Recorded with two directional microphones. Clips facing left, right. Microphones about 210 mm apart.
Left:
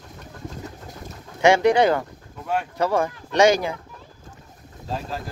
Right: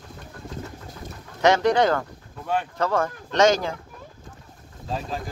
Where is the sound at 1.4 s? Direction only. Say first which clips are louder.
Left 2 dB; 10° left (ahead or behind).